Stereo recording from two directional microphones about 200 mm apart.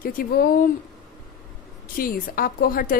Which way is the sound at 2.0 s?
45° left (ahead or behind).